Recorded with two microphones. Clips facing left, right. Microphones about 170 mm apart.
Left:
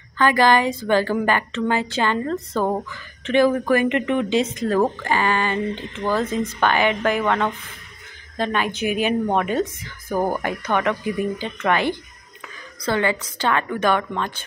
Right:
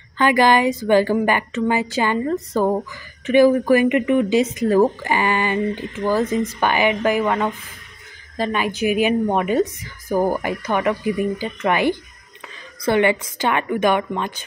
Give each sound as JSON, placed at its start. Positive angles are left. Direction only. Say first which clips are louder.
{"t": 0.2, "sound": "a woman's voice", "louder": "right 1 dB", "side_deg": -15}